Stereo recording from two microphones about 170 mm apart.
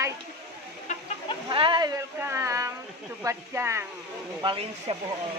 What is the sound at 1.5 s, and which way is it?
Speech, 30° right (ahead or behind).